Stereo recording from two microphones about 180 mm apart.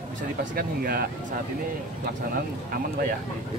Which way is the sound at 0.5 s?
55° right (ahead or behind).